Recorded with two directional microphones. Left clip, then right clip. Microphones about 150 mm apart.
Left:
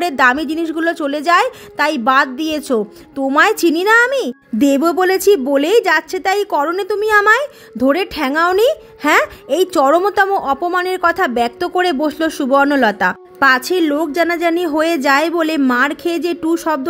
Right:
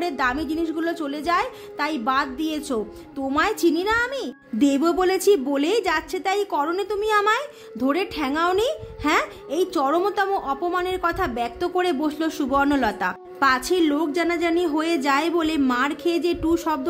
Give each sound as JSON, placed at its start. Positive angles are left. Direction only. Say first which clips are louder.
{"t": 0.0, "sound": "a woman's voice", "louder": "left 10 dB", "side_deg": 50}